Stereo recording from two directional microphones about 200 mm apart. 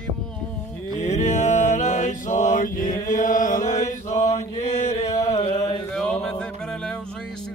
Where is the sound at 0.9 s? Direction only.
35° left (ahead or behind).